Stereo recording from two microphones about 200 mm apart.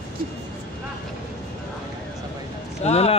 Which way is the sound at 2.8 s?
30° left (ahead or behind).